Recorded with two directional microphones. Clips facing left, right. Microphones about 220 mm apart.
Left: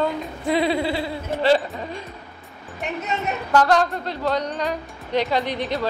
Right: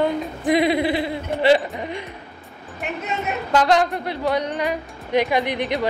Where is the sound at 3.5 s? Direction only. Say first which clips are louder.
Even; 15° right (ahead or behind).